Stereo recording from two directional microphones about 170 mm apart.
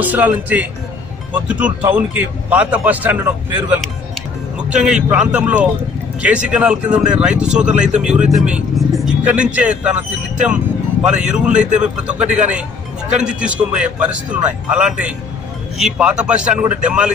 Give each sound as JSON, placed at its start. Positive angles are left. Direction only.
{"t": 0.0, "sound": "speech", "side_deg": -10}
{"t": 7.7, "sound": "speech", "side_deg": -45}
{"t": 8.0, "sound": "speech", "side_deg": -5}
{"t": 10.4, "sound": "vehicle", "side_deg": -5}
{"t": 11.3, "sound": "speech", "side_deg": -5}